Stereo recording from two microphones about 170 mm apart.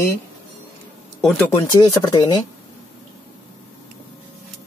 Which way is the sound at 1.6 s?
25° left (ahead or behind).